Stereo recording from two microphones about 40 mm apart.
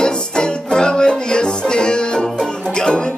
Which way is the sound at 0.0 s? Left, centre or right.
Left.